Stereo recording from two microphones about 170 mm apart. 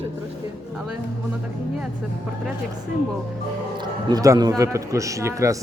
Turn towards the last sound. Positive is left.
turn(degrees=-20)  # may be behind; listen again after turning